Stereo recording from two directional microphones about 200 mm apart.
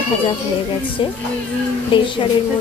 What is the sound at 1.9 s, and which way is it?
Speech, 25° left (ahead or behind).